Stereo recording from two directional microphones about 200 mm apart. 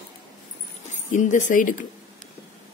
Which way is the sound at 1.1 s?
40° left (ahead or behind).